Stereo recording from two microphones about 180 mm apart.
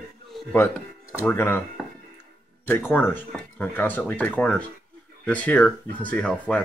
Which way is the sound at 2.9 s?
10° left (ahead or behind).